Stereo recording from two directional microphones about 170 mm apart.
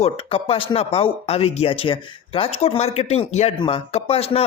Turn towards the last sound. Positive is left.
turn(degrees=35)  # may be behind; listen again after turning